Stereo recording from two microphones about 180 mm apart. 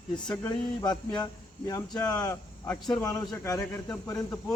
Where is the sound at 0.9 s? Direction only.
5° left (ahead or behind).